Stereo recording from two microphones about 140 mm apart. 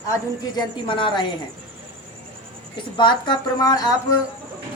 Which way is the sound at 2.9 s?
35° left (ahead or behind).